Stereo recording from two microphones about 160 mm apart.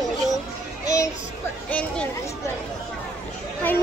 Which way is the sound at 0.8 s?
20° left (ahead or behind).